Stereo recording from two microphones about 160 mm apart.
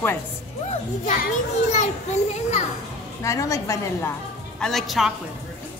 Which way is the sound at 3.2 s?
20° left (ahead or behind).